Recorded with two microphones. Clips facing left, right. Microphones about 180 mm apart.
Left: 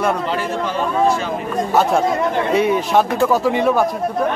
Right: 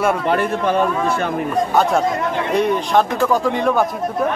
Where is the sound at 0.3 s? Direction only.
55° right (ahead or behind).